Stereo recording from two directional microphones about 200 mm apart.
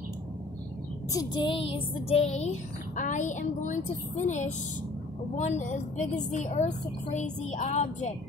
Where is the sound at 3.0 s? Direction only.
40° left (ahead or behind).